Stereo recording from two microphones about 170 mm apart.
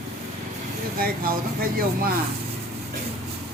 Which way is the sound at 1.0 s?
60° right (ahead or behind).